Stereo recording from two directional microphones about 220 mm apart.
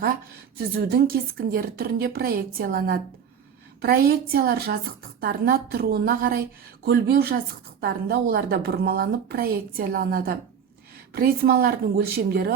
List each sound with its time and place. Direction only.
0.5 s a woman's voice: 45° right (ahead or behind)